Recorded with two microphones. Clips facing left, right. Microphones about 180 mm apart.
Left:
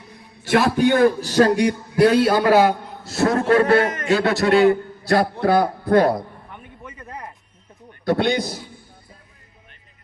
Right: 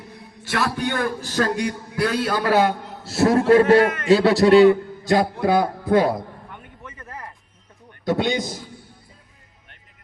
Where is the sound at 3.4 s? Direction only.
25° right (ahead or behind).